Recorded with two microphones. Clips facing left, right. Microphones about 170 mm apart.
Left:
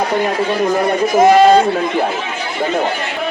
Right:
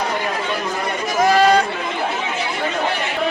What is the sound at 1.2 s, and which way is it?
Speech, 25° left (ahead or behind).